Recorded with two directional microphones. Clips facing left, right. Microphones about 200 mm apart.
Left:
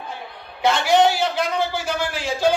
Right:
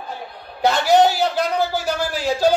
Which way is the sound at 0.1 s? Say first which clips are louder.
Right 2 dB; 40° right (ahead or behind).